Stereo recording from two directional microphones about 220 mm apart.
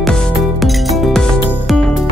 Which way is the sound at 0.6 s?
Centre (ahead or behind).